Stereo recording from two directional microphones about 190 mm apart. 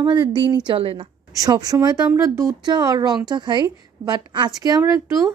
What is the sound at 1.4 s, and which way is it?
A woman's voice, 20° right (ahead or behind).